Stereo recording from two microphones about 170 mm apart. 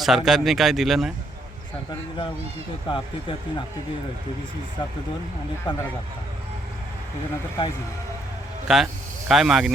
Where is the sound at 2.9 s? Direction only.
30° left (ahead or behind).